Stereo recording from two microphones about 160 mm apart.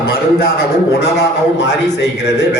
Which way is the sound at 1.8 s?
90° left.